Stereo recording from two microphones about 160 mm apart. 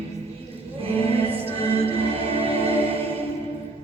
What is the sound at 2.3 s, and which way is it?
Music, 35° right (ahead or behind).